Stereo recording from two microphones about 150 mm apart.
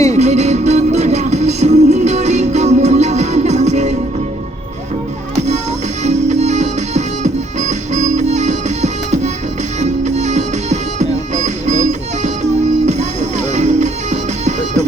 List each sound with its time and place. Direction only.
0.1 s music: 50° right (ahead or behind)
6.0 s music: 50° right (ahead or behind)